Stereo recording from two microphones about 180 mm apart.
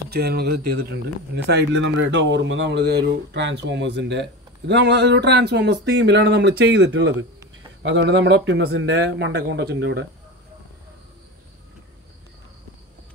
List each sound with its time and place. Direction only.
0.1 s speech: 60° right (ahead or behind); by 10.0 s 80° right